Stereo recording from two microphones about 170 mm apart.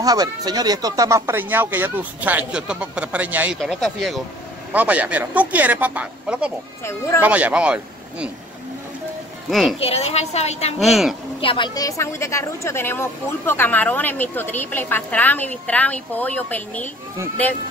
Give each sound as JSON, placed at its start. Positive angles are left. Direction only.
{"t": 0.0, "sound": "speech", "side_deg": -20}
{"t": 3.5, "sound": "speech", "side_deg": 0}
{"t": 6.8, "sound": "a woman's voice", "side_deg": 15}
{"t": 7.2, "sound": "speech", "side_deg": -10}
{"t": 9.5, "sound": "speech", "side_deg": 0}
{"t": 9.8, "sound": "a woman's voice", "side_deg": 35}
{"t": 10.8, "sound": "speech", "side_deg": 0}
{"t": 11.4, "sound": "a woman's voice", "side_deg": 30}